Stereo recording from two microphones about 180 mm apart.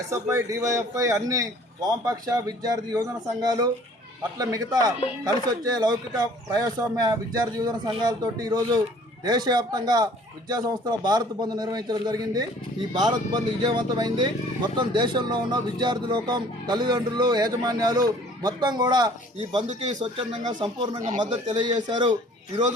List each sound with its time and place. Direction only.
0.1 s a man's voice: 15° right (ahead or behind)
20.5 s speech: 25° right (ahead or behind)